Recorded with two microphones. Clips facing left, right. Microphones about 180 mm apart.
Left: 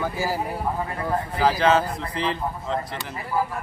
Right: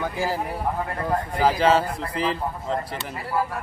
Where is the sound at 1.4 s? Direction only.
10° right (ahead or behind).